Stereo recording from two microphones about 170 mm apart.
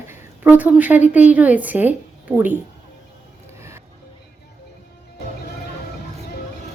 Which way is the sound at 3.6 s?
15° right (ahead or behind).